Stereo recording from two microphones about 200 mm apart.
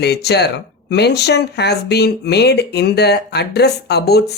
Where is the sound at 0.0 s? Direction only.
55° left (ahead or behind).